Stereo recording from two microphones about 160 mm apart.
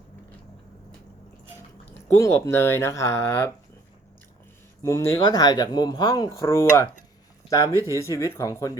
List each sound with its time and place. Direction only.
2.1 s speech: 15° left (ahead or behind)
4.8 s speech: 20° left (ahead or behind)